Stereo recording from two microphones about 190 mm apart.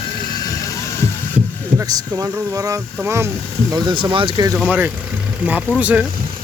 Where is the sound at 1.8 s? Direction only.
20° right (ahead or behind).